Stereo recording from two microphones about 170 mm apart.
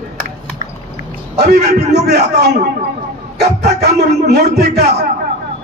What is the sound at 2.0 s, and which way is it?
Speech, 70° right (ahead or behind).